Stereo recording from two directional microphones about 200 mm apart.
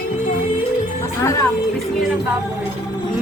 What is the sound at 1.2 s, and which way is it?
Speech, 15° left (ahead or behind).